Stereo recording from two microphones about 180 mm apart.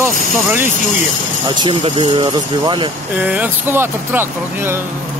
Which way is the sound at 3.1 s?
10° right (ahead or behind).